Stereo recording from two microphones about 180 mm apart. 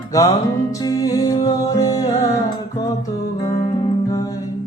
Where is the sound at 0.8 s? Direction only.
20° left (ahead or behind).